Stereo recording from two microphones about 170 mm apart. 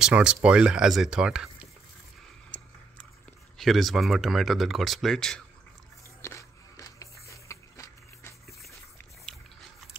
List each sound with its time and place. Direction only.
0.0 s speech: 5° right (ahead or behind)
2.5 s biting: 5° left (ahead or behind)
3.5 s speech: centre (ahead or behind)
6.2 s a sound: 20° left (ahead or behind)